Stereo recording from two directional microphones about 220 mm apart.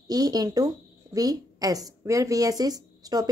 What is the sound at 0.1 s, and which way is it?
A woman's voice, 15° right (ahead or behind).